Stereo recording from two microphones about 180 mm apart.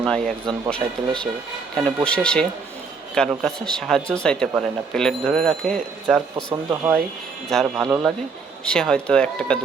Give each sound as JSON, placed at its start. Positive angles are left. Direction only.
{"t": 0.0, "sound": "speech", "side_deg": 5}
{"t": 6.3, "sound": "speech", "side_deg": -20}
{"t": 7.5, "sound": "speech", "side_deg": 0}